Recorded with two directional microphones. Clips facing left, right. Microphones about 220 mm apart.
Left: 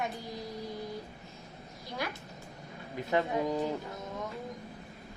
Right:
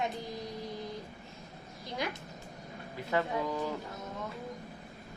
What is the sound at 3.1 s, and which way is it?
Speech, 20° left (ahead or behind).